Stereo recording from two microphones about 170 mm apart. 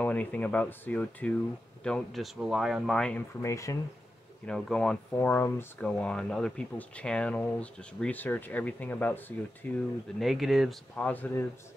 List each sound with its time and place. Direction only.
0.0 s speech: 10° left (ahead or behind)
3.4 s speech: 20° left (ahead or behind)
4.5 s speech: 5° left (ahead or behind)
10.1 s speech: centre (ahead or behind)